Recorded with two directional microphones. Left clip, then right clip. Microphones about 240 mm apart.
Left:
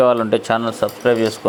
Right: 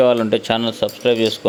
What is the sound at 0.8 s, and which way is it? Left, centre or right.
Speech, right.